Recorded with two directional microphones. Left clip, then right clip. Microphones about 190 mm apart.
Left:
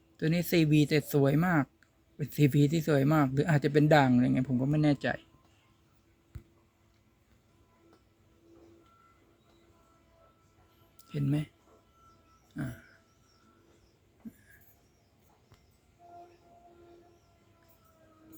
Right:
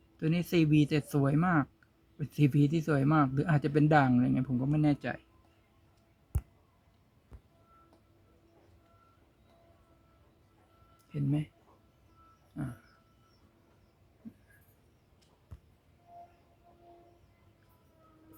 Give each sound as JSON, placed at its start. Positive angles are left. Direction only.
{"t": 0.2, "sound": "speech", "side_deg": 5}
{"t": 4.7, "sound": "speech", "side_deg": 20}
{"t": 10.9, "sound": "a sound", "side_deg": 15}